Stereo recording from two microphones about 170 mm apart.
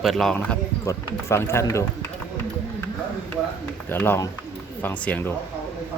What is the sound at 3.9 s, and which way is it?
Speech, 15° left (ahead or behind).